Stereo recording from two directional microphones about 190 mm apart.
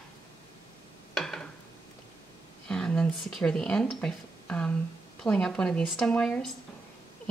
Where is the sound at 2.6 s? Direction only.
5° left (ahead or behind).